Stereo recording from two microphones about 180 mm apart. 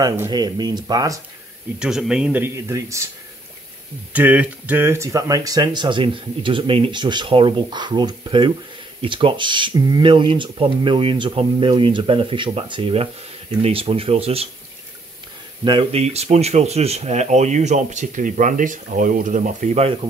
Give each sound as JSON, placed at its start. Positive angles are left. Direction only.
{"t": 0.0, "sound": "speech", "side_deg": -20}
{"t": 1.8, "sound": "speech", "side_deg": -5}
{"t": 4.1, "sound": "speech", "side_deg": -10}
{"t": 15.6, "sound": "speech", "side_deg": -30}